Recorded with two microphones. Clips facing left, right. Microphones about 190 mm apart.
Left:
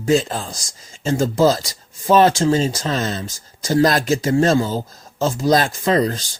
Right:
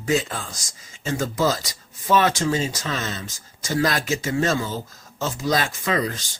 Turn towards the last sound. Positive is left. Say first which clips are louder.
# left 6 dB
turn(degrees=35)  # may be behind; listen again after turning